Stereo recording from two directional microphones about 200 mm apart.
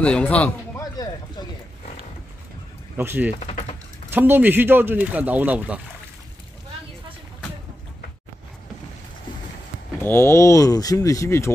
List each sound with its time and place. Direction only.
0.0 s a man's voice: 5° left (ahead or behind)
3.0 s speech: 10° right (ahead or behind)
3.3 s speech: 30° left (ahead or behind)
4.1 s speech: 10° right (ahead or behind)
10.0 s speech: 10° left (ahead or behind)